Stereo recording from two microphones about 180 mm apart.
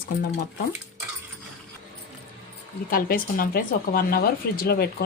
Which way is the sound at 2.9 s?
50° left (ahead or behind).